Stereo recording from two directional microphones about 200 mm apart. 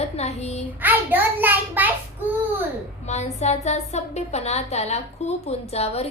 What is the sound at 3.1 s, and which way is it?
A woman's voice, 35° left (ahead or behind).